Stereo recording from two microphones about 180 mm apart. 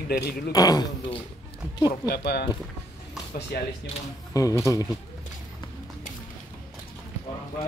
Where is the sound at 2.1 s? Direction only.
65° left (ahead or behind).